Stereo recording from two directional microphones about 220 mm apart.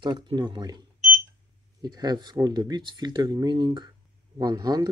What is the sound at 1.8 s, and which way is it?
Speech, 20° right (ahead or behind).